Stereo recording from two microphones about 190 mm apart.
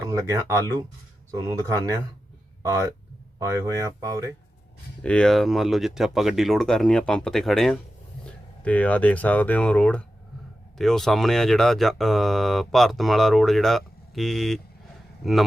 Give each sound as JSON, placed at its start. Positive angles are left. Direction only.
{"t": 0.0, "sound": "speech", "side_deg": -15}
{"t": 3.3, "sound": "speech", "side_deg": -15}
{"t": 5.0, "sound": "speech", "side_deg": 5}